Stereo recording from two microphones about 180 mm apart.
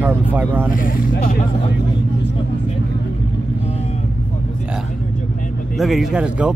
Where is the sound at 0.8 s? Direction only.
50° left (ahead or behind).